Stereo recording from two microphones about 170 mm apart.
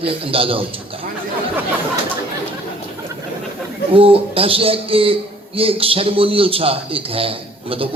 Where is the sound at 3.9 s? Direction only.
35° right (ahead or behind).